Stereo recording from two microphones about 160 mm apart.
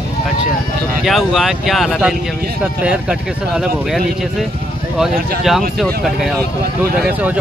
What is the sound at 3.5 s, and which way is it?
Speech, 5° right (ahead or behind).